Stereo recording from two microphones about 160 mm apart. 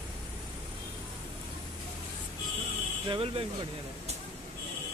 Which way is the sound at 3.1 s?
35° right (ahead or behind).